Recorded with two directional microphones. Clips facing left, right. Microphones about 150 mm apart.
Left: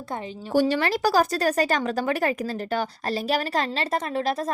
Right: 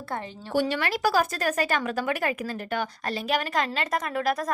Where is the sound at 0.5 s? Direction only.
40° left (ahead or behind).